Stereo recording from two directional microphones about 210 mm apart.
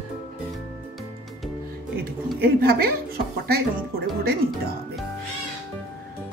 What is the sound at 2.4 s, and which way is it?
Speech, 45° right (ahead or behind).